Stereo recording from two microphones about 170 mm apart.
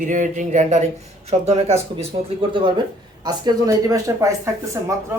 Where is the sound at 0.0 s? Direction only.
50° right (ahead or behind); by 4.9 s 20° right (ahead or behind).